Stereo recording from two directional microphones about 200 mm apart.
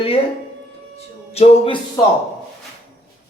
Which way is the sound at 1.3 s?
30° left (ahead or behind).